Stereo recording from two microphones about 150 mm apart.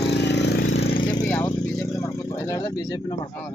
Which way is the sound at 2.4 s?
25° left (ahead or behind).